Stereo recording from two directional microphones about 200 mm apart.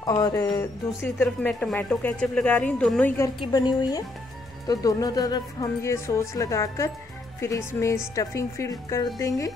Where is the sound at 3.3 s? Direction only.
20° left (ahead or behind).